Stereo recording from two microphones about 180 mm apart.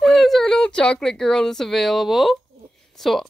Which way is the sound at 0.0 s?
Centre (ahead or behind).